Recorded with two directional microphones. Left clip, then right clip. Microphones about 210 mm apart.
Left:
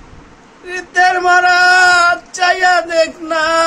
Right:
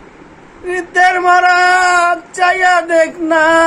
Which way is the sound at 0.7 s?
5° left (ahead or behind).